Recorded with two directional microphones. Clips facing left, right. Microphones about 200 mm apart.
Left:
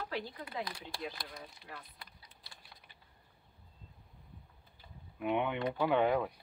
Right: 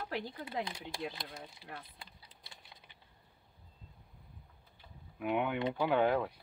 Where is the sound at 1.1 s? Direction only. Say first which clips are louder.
Right 1 dB; 25° right (ahead or behind).